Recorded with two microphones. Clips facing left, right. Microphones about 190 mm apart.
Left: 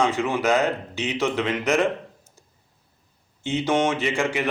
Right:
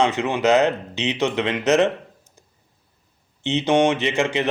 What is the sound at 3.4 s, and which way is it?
Speech, 20° right (ahead or behind).